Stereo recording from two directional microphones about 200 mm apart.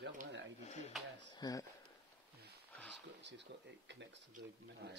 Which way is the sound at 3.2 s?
60° right (ahead or behind).